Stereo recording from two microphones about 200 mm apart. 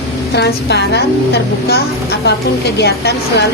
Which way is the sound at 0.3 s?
55° left (ahead or behind).